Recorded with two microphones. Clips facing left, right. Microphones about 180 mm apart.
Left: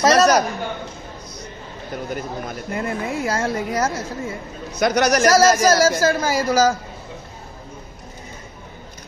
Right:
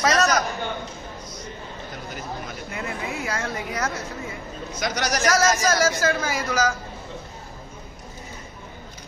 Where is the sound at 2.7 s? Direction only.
50° left (ahead or behind).